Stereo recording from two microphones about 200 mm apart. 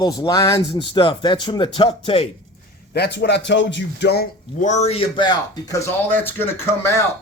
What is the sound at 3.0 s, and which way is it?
Speech, 55° left (ahead or behind).